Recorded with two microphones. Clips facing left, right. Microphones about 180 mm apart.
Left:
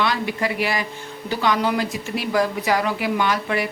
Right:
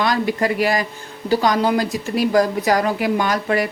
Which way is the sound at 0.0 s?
45° right (ahead or behind).